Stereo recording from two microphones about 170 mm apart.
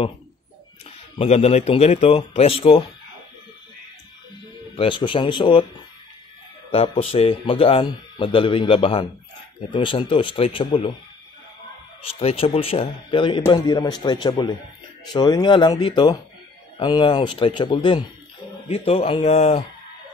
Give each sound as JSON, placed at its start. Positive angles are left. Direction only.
{"t": 1.1, "sound": "speech", "side_deg": 40}
{"t": 4.7, "sound": "speech", "side_deg": 30}
{"t": 6.7, "sound": "speech", "side_deg": 35}
{"t": 12.0, "sound": "speech", "side_deg": 35}